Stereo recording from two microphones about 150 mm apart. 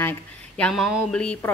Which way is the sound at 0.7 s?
Centre (ahead or behind).